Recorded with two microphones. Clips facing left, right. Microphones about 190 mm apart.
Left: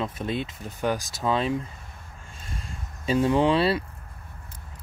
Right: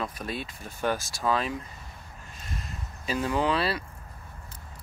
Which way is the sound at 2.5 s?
30° left (ahead or behind).